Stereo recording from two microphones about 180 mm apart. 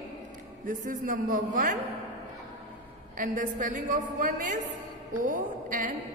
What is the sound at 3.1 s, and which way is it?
A woman's voice, 45° right (ahead or behind).